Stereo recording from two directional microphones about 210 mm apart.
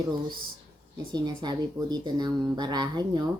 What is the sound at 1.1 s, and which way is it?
Speech, 20° right (ahead or behind).